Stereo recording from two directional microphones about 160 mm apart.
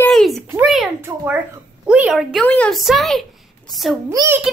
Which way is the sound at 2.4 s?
10° left (ahead or behind).